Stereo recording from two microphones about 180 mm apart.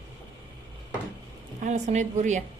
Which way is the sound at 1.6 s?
40° right (ahead or behind).